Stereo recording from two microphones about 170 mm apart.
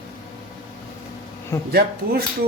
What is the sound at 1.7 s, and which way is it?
Speech, 70° right (ahead or behind).